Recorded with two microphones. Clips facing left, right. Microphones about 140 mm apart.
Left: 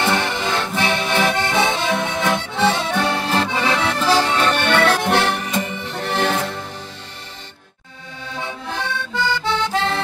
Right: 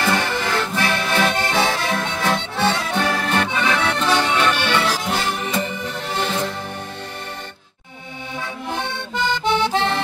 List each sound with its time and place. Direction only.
0.0 s accordion: 20° left (ahead or behind)
4.2 s accordion: 15° right (ahead or behind)
4.6 s accordion: 50° left (ahead or behind)
6.0 s music: 70° left (ahead or behind)
8.6 s accordion: 20° right (ahead or behind)